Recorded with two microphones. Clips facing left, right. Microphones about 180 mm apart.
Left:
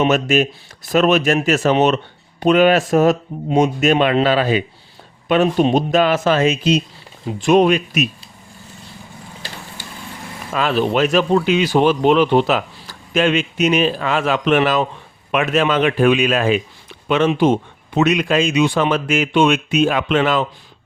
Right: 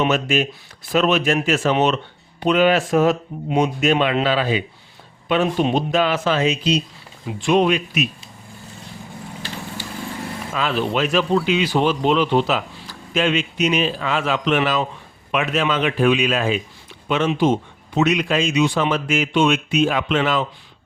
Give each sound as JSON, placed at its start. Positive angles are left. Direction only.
{"t": 0.1, "sound": "speech", "side_deg": 45}
{"t": 10.5, "sound": "speech", "side_deg": 50}